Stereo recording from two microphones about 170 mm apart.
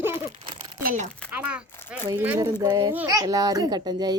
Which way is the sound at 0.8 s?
60° right (ahead or behind).